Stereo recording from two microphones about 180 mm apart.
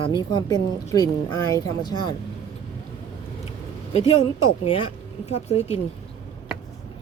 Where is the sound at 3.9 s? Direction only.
35° left (ahead or behind).